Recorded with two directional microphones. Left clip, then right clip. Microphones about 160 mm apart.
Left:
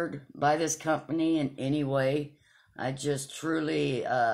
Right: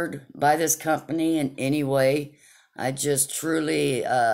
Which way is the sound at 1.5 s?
30° right (ahead or behind).